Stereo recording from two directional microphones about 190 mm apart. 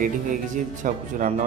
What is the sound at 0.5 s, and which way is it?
Speech, 40° right (ahead or behind).